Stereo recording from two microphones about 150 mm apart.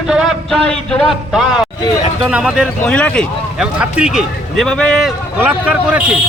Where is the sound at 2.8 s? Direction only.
10° left (ahead or behind).